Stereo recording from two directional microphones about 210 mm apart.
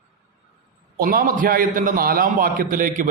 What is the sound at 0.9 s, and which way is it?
A man's voice, 45° right (ahead or behind).